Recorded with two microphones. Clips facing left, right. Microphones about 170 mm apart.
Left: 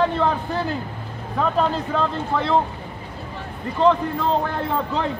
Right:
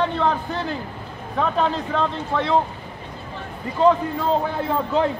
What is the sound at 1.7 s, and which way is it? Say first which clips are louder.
Speech: even; centre (ahead or behind).